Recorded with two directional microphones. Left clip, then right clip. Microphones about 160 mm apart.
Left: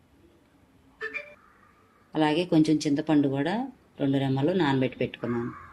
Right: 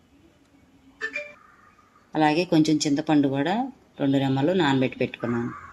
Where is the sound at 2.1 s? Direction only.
25° right (ahead or behind).